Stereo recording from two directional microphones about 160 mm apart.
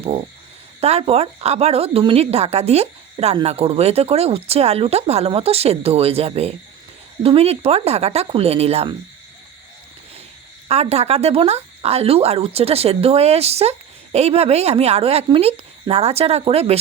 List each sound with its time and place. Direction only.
0.0 s speech: 35° right (ahead or behind)
10.7 s speech: 40° right (ahead or behind)